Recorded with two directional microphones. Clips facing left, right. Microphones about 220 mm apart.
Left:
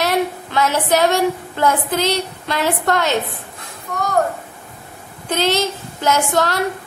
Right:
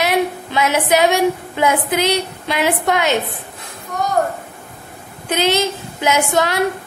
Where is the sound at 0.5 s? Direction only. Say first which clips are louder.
Even; 15° right (ahead or behind).